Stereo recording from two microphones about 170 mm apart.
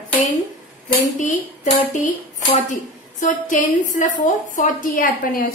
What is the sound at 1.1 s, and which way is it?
Speech, 45° left (ahead or behind).